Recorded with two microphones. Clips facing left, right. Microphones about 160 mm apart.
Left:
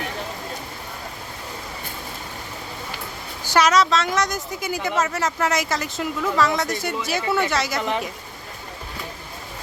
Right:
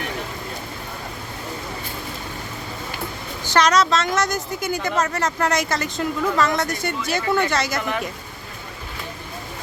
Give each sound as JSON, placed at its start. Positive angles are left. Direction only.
{"t": 3.4, "sound": "a woman's voice", "side_deg": 10}
{"t": 7.8, "sound": "a woman's voice", "side_deg": 25}